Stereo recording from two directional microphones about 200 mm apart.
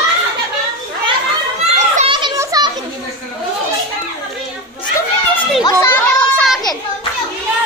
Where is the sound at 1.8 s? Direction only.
35° right (ahead or behind).